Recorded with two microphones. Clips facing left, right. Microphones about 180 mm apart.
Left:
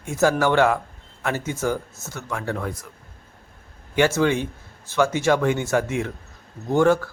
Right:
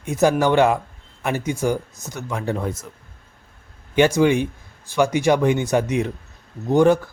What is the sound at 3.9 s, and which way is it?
A man's voice, 15° right (ahead or behind).